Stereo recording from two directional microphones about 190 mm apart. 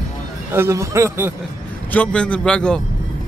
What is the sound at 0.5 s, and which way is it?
Speech, 15° right (ahead or behind).